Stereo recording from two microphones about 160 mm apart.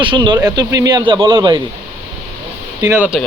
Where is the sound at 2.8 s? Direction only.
15° right (ahead or behind).